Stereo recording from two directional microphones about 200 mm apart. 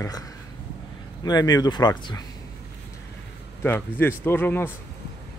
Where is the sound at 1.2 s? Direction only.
20° left (ahead or behind).